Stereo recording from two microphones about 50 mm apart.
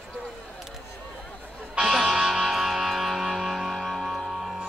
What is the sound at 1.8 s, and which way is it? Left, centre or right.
Music, centre.